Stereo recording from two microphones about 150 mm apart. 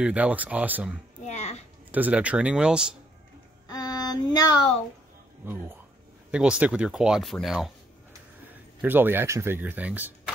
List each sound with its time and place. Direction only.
0.0 s speech: 10° right (ahead or behind)
1.2 s a sound: 45° left (ahead or behind)
1.9 s speech: 10° right (ahead or behind)
3.7 s a sound: 25° left (ahead or behind)
5.4 s speech: 15° right (ahead or behind)
8.8 s speech: 15° right (ahead or behind)